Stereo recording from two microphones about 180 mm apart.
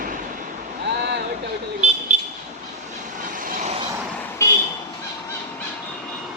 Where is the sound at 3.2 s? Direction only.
50° right (ahead or behind).